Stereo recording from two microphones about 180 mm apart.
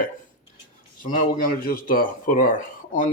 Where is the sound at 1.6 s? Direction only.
50° left (ahead or behind).